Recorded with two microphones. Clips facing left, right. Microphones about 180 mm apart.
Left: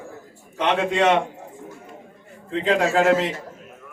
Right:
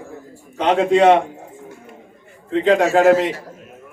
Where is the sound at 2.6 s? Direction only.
30° right (ahead or behind).